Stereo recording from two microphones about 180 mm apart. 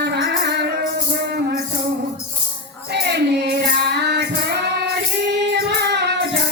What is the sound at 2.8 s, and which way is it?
Music, 65° right (ahead or behind).